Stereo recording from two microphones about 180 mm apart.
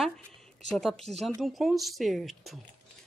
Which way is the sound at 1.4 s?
Centre (ahead or behind).